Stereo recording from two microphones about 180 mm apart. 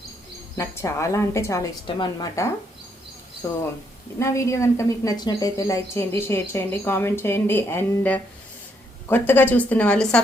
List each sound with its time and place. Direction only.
0.5 s a woman's voice: 15° left (ahead or behind)